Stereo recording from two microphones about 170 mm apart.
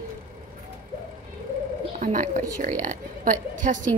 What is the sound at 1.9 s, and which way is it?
A woman's voice, 50° right (ahead or behind).